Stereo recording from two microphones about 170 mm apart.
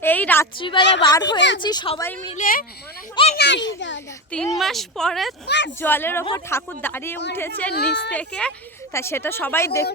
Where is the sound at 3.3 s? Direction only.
90° left.